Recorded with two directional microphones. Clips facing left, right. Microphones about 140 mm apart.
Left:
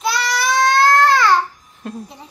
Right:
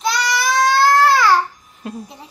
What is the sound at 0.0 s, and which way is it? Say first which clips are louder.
Child singing: even; centre (ahead or behind).